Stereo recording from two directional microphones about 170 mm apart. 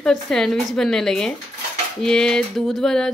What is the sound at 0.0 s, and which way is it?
A woman's voice, 5° left (ahead or behind).